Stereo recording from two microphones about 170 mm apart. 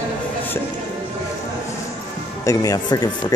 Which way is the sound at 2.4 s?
20° left (ahead or behind).